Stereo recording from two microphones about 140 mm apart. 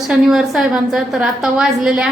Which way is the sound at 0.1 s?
5° right (ahead or behind).